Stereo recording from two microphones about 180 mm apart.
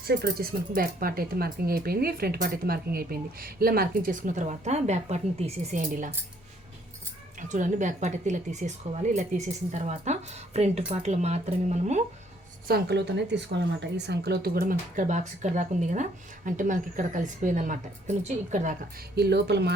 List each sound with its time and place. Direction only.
0.0 s speech: 60° right (ahead or behind); by 6.1 s 45° right (ahead or behind)
7.4 s a woman's voice: 45° right (ahead or behind)
12.6 s a woman's voice: 60° right (ahead or behind); by 18.9 s 45° right (ahead or behind)
19.1 s speech: 65° right (ahead or behind)